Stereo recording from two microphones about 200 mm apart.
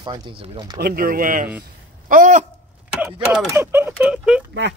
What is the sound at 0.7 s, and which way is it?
Speech, 50° right (ahead or behind).